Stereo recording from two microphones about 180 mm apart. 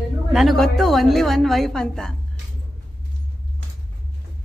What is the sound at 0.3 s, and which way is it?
A woman's voice, centre (ahead or behind).